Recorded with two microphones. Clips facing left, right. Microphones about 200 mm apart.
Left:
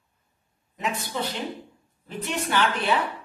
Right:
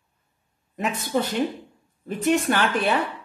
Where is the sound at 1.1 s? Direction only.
45° right (ahead or behind).